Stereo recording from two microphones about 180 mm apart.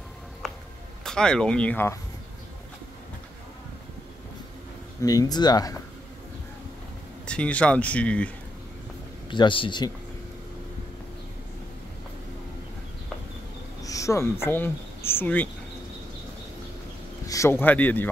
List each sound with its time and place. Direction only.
1.0 s speech: 5° left (ahead or behind)
5.0 s speech: 20° left (ahead or behind)
7.2 s speech: 5° left (ahead or behind)
9.3 s speech: 25° left (ahead or behind)
13.8 s speech: 15° left (ahead or behind)
17.3 s speech: 15° left (ahead or behind)